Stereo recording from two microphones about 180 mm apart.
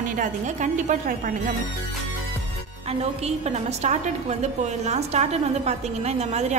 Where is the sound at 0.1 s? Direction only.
45° right (ahead or behind).